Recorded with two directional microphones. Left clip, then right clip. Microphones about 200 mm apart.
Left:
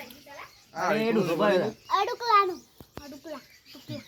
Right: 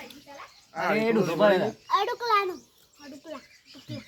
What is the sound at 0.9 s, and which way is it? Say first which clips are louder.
Speech: right 1 dB; centre (ahead or behind).